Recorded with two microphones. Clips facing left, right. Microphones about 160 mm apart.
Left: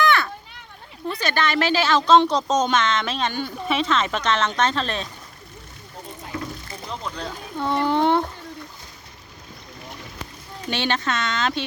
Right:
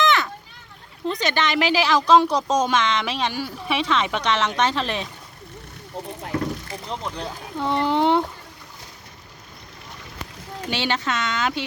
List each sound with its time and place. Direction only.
0.0 s a sound: 20° right (ahead or behind)
1.0 s speech: 20° right (ahead or behind)
6.9 s speech: 15° right (ahead or behind)
10.7 s speech: 15° right (ahead or behind)